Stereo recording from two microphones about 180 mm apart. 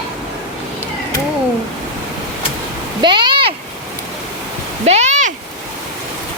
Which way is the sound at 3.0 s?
25° right (ahead or behind).